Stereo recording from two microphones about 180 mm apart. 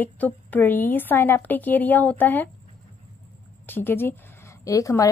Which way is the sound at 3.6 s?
10° left (ahead or behind).